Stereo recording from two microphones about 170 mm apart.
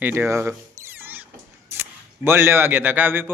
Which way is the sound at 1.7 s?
15° right (ahead or behind).